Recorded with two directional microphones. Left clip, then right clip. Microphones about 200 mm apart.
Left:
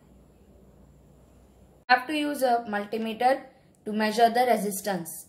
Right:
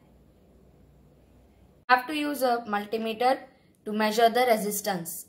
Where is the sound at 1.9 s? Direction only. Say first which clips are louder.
Even; 30° right (ahead or behind).